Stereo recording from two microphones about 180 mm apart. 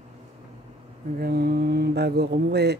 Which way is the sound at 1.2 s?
60° right (ahead or behind).